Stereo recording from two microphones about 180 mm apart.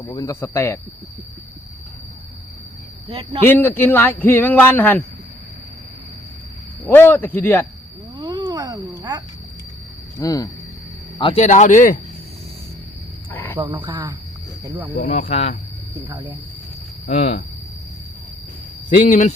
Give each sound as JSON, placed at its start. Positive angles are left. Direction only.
{"t": 0.1, "sound": "speech", "side_deg": 20}
{"t": 3.1, "sound": "speech", "side_deg": -30}
{"t": 3.4, "sound": "speech", "side_deg": 10}
{"t": 6.8, "sound": "speech", "side_deg": 10}
{"t": 8.2, "sound": "a sound", "side_deg": -20}
{"t": 10.2, "sound": "speech", "side_deg": 20}
{"t": 11.4, "sound": "speech", "side_deg": 45}
{"t": 13.3, "sound": "wild animals", "side_deg": 10}
{"t": 13.6, "sound": "speech", "side_deg": -25}
{"t": 15.2, "sound": "speech", "side_deg": 35}
{"t": 17.1, "sound": "speech", "side_deg": 45}
{"t": 19.0, "sound": "speech", "side_deg": 45}